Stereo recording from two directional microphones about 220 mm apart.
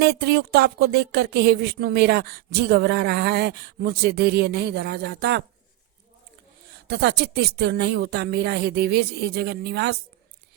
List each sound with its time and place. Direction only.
0.0 s speech: 45° right (ahead or behind)
6.8 s speech: 50° right (ahead or behind)